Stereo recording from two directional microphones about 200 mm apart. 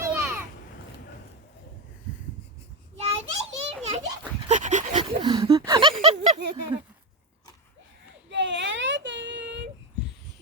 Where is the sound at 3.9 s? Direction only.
35° right (ahead or behind).